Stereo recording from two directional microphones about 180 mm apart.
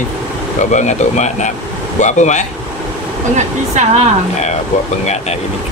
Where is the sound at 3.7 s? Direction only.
35° right (ahead or behind).